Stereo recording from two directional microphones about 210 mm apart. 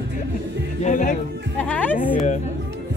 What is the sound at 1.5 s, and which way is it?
Music, 5° left (ahead or behind).